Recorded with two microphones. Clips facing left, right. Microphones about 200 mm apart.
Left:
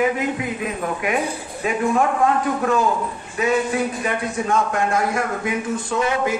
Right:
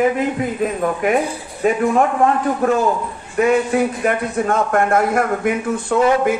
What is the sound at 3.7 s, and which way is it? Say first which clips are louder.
A man's voice: right 5 dB; 55° right (ahead or behind).